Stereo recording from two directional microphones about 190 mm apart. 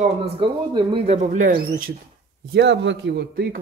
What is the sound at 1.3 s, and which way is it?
Speech, 45° right (ahead or behind).